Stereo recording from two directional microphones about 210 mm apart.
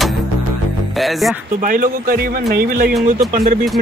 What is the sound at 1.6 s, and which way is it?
Speech, 40° right (ahead or behind).